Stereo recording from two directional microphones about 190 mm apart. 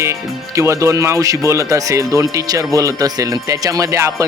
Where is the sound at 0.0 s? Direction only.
15° right (ahead or behind).